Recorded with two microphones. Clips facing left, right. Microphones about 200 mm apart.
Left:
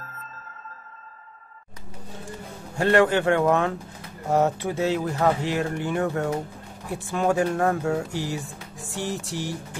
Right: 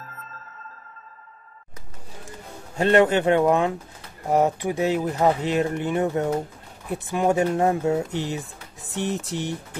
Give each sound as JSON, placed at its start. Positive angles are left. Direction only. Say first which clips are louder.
{"t": 2.7, "sound": "speech", "louder": "right 2 dB", "side_deg": -20}
{"t": 8.8, "sound": "music", "louder": "right 3 dB", "side_deg": -20}